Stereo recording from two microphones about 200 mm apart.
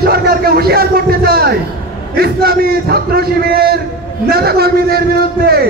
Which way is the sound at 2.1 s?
50° right (ahead or behind).